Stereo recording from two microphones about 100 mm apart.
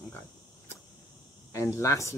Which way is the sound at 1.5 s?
30° left (ahead or behind).